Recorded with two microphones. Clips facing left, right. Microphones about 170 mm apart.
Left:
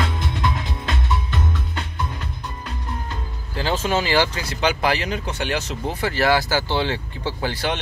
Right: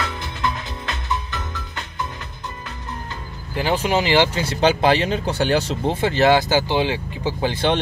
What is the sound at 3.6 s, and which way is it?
Speech, 15° right (ahead or behind).